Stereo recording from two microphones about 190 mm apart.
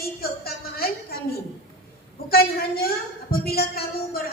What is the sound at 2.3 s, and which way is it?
A woman's voice, 55° left (ahead or behind).